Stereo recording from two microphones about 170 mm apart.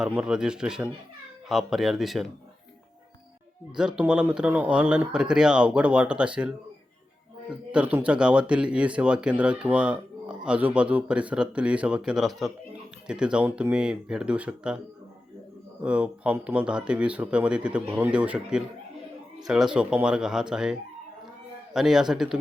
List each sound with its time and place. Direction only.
0.0 s speech: 5° right (ahead or behind)
3.8 s speech: 5° right (ahead or behind)
7.7 s speech: 10° right (ahead or behind)
15.8 s speech: 5° right (ahead or behind)